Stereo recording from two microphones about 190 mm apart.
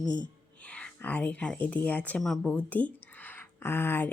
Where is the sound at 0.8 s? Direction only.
5° left (ahead or behind).